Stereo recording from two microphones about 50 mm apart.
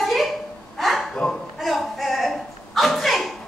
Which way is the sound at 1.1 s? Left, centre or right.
Centre.